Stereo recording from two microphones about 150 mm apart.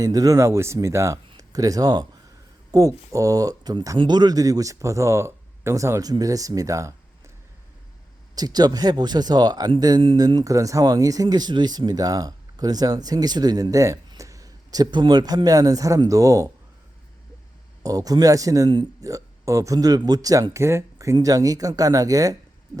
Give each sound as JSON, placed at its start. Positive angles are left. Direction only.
{"t": 0.0, "sound": "speech", "side_deg": -25}
{"t": 8.4, "sound": "speech", "side_deg": -25}
{"t": 17.8, "sound": "speech", "side_deg": -25}